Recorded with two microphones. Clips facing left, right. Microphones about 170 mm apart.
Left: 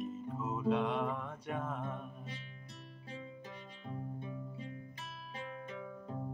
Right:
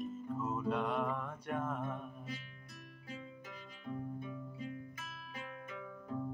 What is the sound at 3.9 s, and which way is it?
Music, 30° left (ahead or behind).